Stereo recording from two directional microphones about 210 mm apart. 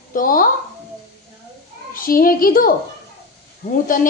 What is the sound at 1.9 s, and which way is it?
Speech, 45° left (ahead or behind).